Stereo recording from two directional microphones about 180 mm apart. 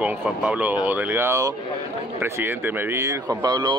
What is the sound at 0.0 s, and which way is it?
Speech, 10° right (ahead or behind).